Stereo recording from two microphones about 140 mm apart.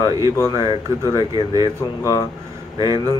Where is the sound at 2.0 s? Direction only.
25° left (ahead or behind).